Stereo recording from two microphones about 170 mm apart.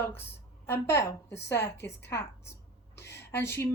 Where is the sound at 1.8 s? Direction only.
90° left.